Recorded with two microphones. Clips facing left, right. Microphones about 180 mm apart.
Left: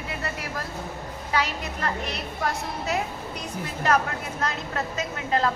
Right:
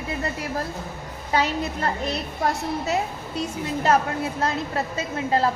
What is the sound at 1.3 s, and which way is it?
A woman's voice, 35° right (ahead or behind).